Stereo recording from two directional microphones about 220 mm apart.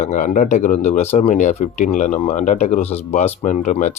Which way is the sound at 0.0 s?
35° left (ahead or behind).